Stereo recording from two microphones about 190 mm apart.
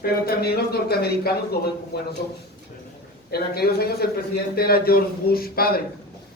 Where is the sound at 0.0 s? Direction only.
55° left (ahead or behind).